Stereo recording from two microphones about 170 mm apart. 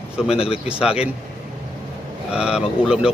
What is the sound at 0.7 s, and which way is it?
Speech, 5° right (ahead or behind).